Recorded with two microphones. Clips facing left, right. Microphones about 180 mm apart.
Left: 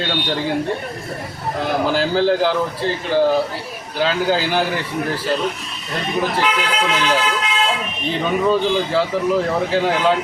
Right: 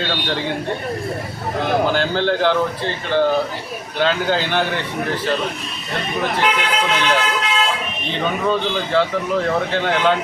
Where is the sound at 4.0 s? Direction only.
5° left (ahead or behind).